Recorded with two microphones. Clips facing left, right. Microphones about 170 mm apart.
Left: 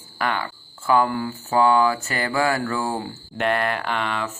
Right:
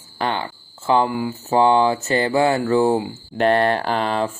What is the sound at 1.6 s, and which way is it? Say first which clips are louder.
Mantra: right 2 dB; 25° right (ahead or behind).